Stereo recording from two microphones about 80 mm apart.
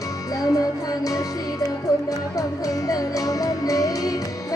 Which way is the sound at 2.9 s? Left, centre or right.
Left.